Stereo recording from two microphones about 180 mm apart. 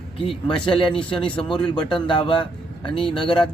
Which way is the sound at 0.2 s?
30° left (ahead or behind).